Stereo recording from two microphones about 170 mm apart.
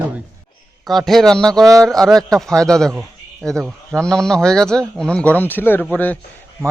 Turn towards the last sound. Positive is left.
turn(degrees=10)  # may be behind; listen again after turning